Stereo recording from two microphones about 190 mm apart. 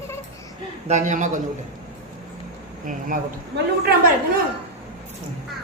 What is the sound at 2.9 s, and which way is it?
Speech, 45° right (ahead or behind).